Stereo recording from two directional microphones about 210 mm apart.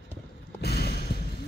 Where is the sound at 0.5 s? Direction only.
50° left (ahead or behind).